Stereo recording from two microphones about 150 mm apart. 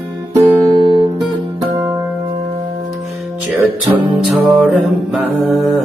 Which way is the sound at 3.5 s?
10° right (ahead or behind).